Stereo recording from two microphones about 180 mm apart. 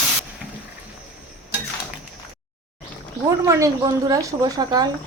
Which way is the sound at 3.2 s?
15° right (ahead or behind).